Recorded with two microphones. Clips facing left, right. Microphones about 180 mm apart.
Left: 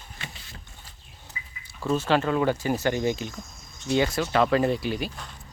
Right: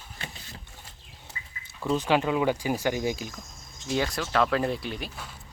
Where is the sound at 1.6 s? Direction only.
15° right (ahead or behind).